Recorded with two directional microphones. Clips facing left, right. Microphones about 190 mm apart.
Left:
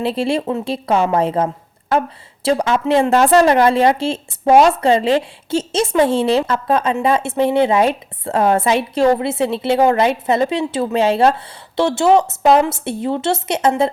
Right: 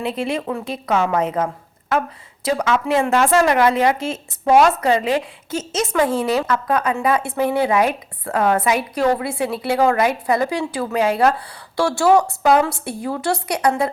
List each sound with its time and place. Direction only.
0.0 s a woman's voice: 30° left (ahead or behind)